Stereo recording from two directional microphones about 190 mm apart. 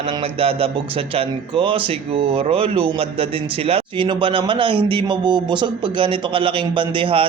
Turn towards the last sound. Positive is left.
turn(degrees=-30)  # may be behind; listen again after turning